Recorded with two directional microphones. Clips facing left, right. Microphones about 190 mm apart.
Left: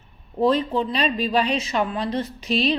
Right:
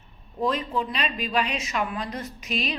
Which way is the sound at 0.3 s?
30° left (ahead or behind).